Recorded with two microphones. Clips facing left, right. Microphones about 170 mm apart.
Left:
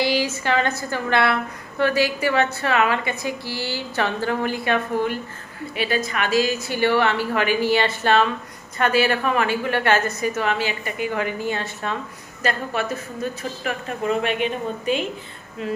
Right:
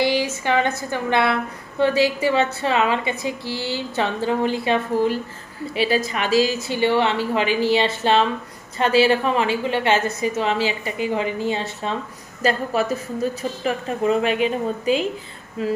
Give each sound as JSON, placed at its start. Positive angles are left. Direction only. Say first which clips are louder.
{"t": 0.0, "sound": "a woman's voice", "louder": "right 1 dB", "side_deg": -20}
{"t": 12.4, "sound": "a woman's voice", "louder": "right 4 dB", "side_deg": -35}